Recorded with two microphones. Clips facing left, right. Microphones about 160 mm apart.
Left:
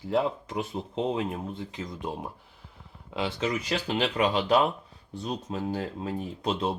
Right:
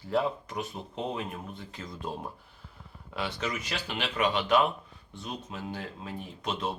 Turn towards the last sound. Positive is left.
turn(degrees=35)  # may be behind; listen again after turning